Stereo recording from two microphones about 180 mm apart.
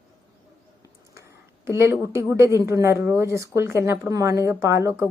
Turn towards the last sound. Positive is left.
turn(degrees=-15)  # may be behind; listen again after turning